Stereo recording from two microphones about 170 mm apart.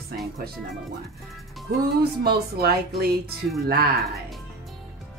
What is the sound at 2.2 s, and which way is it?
Speech, 65° right (ahead or behind).